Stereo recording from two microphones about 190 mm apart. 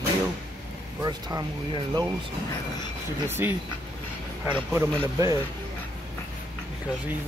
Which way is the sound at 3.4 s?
10° right (ahead or behind).